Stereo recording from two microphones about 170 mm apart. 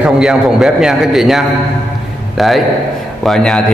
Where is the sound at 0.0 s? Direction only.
5° right (ahead or behind).